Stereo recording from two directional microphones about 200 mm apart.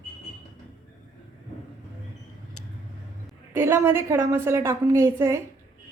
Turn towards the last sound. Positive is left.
turn(degrees=-10)  # may be behind; listen again after turning